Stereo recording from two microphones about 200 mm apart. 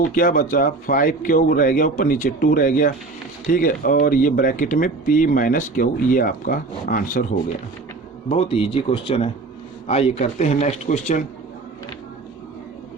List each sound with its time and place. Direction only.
0.0 s speech: 45° left (ahead or behind)
8.3 s speech: 30° left (ahead or behind)